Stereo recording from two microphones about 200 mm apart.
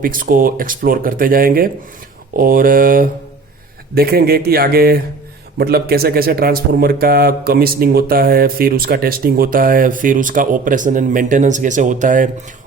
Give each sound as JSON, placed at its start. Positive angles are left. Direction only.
{"t": 0.0, "sound": "speech", "side_deg": -45}